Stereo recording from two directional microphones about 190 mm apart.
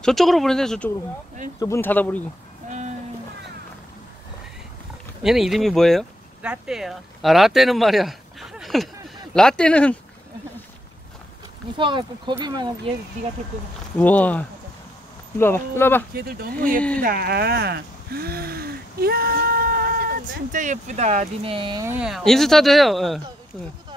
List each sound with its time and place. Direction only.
0.0 s speech: centre (ahead or behind)
5.2 s speech: centre (ahead or behind)
11.7 s speech: 25° right (ahead or behind)
13.9 s speech: 10° left (ahead or behind)
16.2 s speech: 55° right (ahead or behind); by 21.8 s 25° right (ahead or behind)
21.8 s speech: 5° right (ahead or behind)